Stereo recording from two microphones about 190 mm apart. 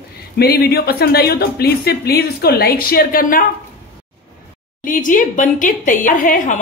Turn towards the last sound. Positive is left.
turn(degrees=45)  # may be behind; listen again after turning